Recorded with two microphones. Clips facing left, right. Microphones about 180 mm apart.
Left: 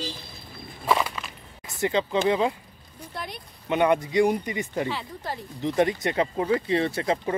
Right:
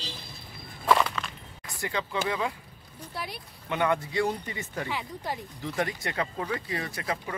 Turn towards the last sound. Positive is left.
turn(degrees=30)  # may be behind; listen again after turning